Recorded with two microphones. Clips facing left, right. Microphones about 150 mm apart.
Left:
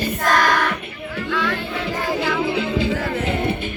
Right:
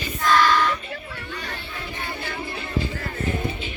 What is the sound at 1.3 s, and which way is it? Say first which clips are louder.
Music: left 12 dB; 80° left.